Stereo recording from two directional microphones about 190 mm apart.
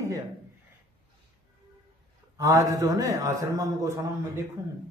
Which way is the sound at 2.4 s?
15° right (ahead or behind).